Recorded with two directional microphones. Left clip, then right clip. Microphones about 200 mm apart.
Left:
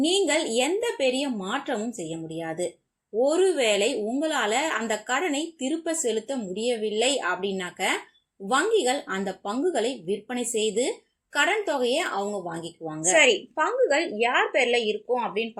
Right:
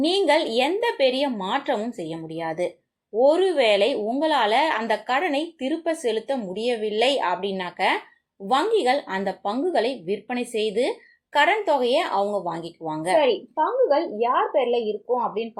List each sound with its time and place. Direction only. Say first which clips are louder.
0.1 s a woman's voice: right 3 dB; 15° right (ahead or behind)
10.5 s speech: right 1 dB; 50° right (ahead or behind)
11.3 s a woman's voice: right 4 dB; 15° right (ahead or behind)